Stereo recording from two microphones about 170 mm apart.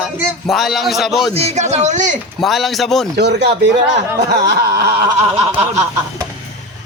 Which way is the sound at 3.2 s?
80° right.